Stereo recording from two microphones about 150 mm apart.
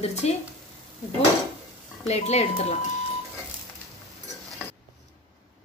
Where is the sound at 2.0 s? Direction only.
45° left (ahead or behind).